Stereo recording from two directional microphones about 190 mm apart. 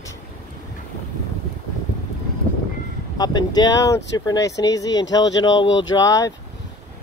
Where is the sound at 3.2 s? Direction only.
20° left (ahead or behind).